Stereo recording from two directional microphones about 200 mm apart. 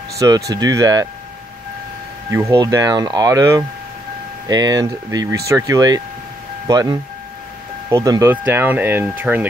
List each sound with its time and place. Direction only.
0.2 s speech: 20° right (ahead or behind)
2.5 s speech: 20° right (ahead or behind)